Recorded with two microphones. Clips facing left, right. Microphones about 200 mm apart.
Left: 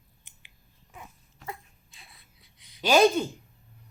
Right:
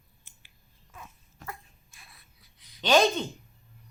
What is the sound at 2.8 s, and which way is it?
Speech, 10° left (ahead or behind).